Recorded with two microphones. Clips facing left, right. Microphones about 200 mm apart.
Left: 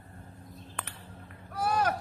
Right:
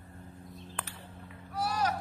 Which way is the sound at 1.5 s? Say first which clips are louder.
Left 3 dB; 55° left (ahead or behind).